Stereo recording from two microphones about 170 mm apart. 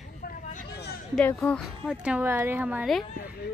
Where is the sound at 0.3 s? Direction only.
50° left (ahead or behind).